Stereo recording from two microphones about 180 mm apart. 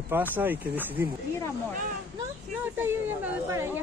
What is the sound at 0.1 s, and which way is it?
Speech, 10° right (ahead or behind).